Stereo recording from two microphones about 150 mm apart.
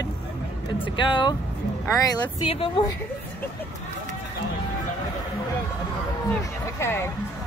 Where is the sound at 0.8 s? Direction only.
35° left (ahead or behind).